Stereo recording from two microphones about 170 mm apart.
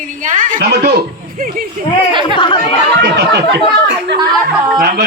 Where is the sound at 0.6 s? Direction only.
75° right (ahead or behind).